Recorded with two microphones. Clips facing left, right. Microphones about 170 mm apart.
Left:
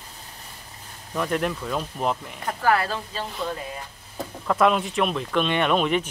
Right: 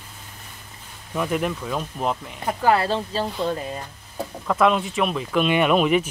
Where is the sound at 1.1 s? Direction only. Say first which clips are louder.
Right 1 dB; 5° right (ahead or behind).